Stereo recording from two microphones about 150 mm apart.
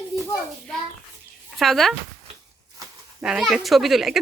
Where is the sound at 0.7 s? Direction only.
5° left (ahead or behind).